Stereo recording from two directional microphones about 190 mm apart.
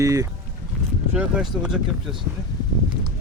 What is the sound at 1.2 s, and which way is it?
Speech, 5° right (ahead or behind).